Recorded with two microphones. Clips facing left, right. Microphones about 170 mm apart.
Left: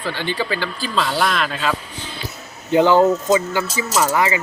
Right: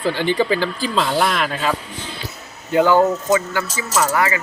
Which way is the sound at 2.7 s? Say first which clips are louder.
Left 1 dB; 20° left (ahead or behind).